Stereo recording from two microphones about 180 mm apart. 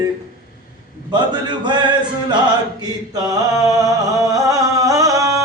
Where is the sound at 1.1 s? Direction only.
25° right (ahead or behind).